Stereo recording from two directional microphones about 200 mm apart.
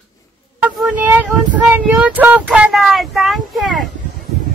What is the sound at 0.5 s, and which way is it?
Child singing, 10° right (ahead or behind).